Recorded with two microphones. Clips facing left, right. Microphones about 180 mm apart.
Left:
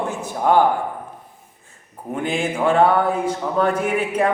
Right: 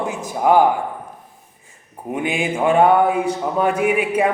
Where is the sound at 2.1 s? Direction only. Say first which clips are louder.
Right 1 dB; 10° right (ahead or behind).